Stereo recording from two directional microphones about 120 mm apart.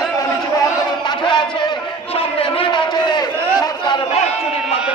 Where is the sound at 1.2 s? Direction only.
40° left (ahead or behind).